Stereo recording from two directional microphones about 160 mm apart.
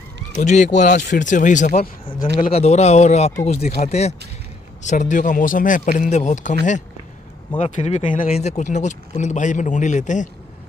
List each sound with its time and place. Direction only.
0.4 s speech: 50° left (ahead or behind)
2.5 s speech: 40° left (ahead or behind)